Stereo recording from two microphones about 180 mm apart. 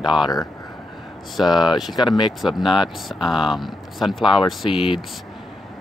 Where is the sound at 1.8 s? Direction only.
Centre (ahead or behind).